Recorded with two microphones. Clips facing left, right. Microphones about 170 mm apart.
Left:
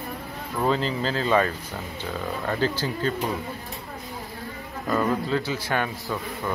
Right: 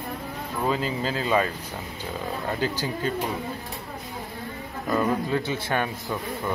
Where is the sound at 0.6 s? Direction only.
10° right (ahead or behind).